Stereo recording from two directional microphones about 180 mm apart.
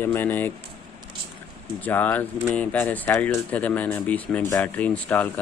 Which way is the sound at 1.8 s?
10° left (ahead or behind).